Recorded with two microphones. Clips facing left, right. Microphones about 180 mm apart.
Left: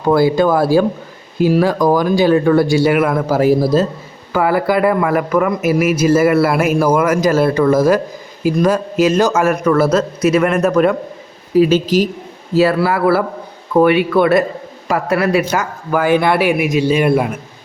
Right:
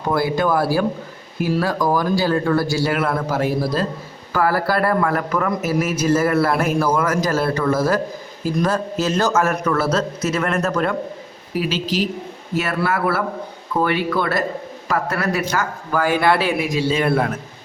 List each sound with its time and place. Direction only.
0.1 s a man's voice: 25° left (ahead or behind)
11.7 s speech: 45° left (ahead or behind)
12.5 s speech: 30° left (ahead or behind)
13.8 s a man's voice: 20° left (ahead or behind)